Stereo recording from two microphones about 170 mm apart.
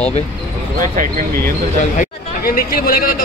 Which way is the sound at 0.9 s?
50° right (ahead or behind).